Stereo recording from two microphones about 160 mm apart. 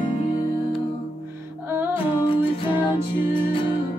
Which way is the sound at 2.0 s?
35° left (ahead or behind).